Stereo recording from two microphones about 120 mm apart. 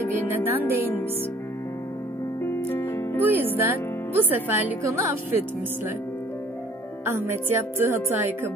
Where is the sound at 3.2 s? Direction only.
15° right (ahead or behind).